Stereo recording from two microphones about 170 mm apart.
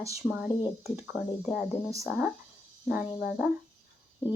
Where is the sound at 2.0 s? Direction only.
5° right (ahead or behind).